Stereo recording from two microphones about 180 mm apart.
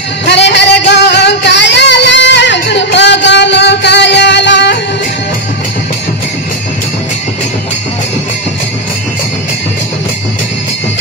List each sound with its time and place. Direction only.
0.3 s music: 70° left (ahead or behind)